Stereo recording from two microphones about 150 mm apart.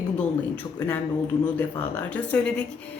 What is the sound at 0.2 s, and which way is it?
Speech, 10° left (ahead or behind).